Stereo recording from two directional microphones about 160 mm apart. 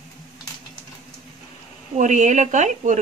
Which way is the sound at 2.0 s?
50° right (ahead or behind).